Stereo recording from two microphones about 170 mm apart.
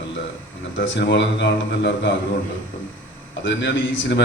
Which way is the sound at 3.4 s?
90° left.